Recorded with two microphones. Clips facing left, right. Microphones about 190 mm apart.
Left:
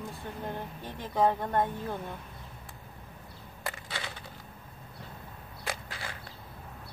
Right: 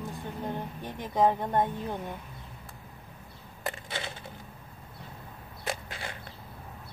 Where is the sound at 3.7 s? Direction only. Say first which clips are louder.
Right 3 dB; 20° right (ahead or behind).